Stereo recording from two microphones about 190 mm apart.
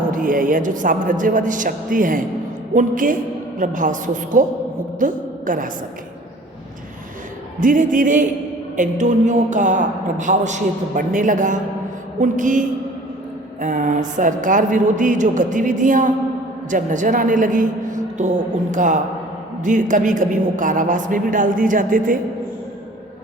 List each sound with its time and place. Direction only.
0.1 s a woman's voice: 45° right (ahead or behind)
7.6 s a woman's voice: 45° right (ahead or behind)